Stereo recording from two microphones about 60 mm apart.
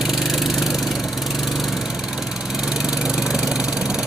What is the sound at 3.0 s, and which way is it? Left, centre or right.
Engine, centre.